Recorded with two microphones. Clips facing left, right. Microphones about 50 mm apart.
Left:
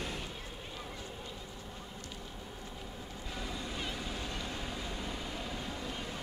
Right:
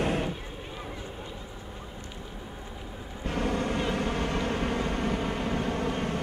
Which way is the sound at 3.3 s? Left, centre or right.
Right.